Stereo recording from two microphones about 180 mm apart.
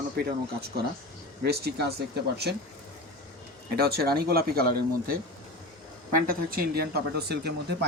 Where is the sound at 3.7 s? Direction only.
60° right (ahead or behind).